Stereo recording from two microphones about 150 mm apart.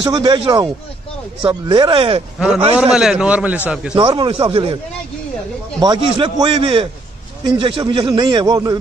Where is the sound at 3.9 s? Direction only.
30° right (ahead or behind).